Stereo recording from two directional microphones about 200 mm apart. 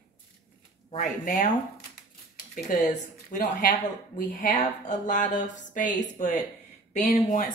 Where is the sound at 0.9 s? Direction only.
40° left (ahead or behind).